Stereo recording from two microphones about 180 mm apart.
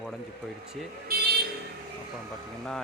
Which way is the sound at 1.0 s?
60° right (ahead or behind).